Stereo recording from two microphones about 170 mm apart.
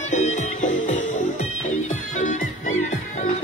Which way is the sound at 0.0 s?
45° left (ahead or behind).